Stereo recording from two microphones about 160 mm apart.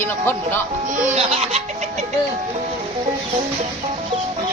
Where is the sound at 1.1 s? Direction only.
40° right (ahead or behind).